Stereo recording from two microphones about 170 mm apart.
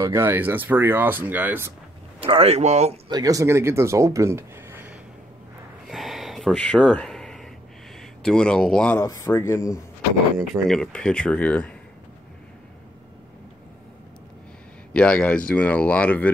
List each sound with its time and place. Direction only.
0.0 s speech: 15° right (ahead or behind)
2.1 s speech: 35° right (ahead or behind)
3.1 s speech: 20° right (ahead or behind)
5.9 s a sound: centre (ahead or behind)
8.2 s speech: 5° left (ahead or behind)
9.0 s speech: 15° left (ahead or behind)
10.5 s speech: 5° left (ahead or behind)
14.9 s speech: 5° left (ahead or behind)